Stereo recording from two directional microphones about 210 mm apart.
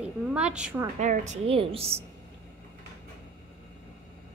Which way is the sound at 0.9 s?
35° right (ahead or behind).